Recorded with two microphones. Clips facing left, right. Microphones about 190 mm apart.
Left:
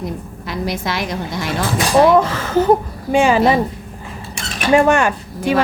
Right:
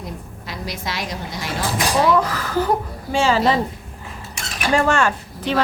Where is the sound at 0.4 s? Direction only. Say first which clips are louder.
Left 7 dB; 55° left (ahead or behind).